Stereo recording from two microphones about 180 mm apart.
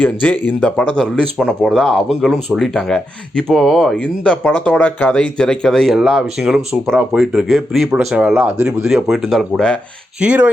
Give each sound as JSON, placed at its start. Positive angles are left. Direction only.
{"t": 0.0, "sound": "speech", "side_deg": 10}